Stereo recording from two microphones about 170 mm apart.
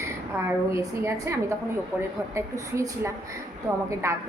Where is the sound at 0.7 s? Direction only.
20° right (ahead or behind).